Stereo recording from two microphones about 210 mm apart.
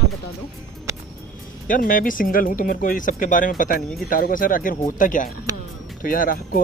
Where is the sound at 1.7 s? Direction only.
40° left (ahead or behind).